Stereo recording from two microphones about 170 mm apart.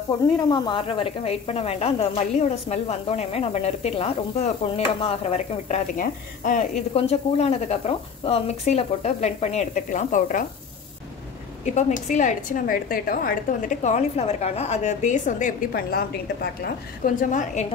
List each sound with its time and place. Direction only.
0.5 s speech: 30° left (ahead or behind); by 6.6 s 50° left (ahead or behind)
6.9 s speech: 35° left (ahead or behind)
11.6 s a woman's voice: 45° left (ahead or behind)